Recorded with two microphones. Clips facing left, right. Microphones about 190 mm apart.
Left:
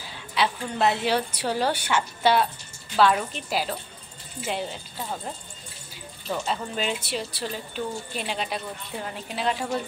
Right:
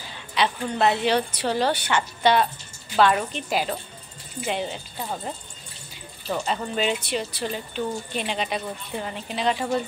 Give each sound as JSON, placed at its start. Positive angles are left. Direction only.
{"t": 0.3, "sound": "a woman's voice", "side_deg": 5}
{"t": 6.4, "sound": "speech", "side_deg": 0}